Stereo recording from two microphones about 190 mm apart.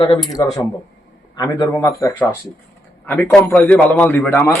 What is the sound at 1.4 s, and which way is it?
A man's voice, 20° left (ahead or behind).